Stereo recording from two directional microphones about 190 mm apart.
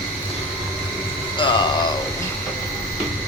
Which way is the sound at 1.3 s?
25° left (ahead or behind).